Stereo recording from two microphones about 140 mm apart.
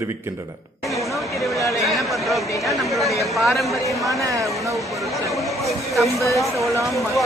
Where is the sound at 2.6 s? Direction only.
Centre (ahead or behind).